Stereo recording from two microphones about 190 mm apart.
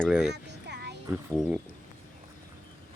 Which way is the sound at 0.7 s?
60° right (ahead or behind).